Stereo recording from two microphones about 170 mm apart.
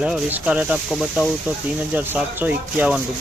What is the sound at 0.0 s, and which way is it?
Speech, 10° right (ahead or behind).